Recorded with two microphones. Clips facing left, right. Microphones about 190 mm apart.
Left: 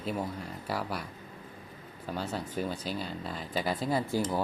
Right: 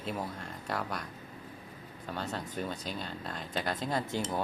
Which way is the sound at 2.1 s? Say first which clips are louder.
Left 3 dB; 5° left (ahead or behind).